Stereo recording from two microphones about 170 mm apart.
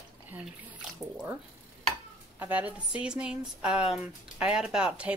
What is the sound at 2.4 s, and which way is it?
Speech, 10° right (ahead or behind).